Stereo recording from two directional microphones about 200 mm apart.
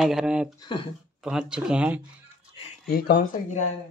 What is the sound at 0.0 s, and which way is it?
Speech, 5° right (ahead or behind).